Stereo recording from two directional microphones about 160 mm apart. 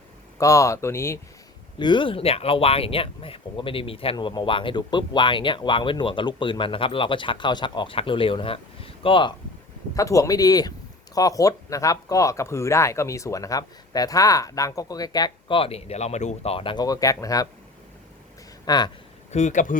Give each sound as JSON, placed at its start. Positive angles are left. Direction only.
{"t": 0.3, "sound": "speech", "side_deg": 20}
{"t": 1.8, "sound": "speech", "side_deg": 30}
{"t": 9.9, "sound": "speech", "side_deg": 20}
{"t": 18.6, "sound": "speech", "side_deg": 25}
{"t": 19.3, "sound": "speech", "side_deg": 45}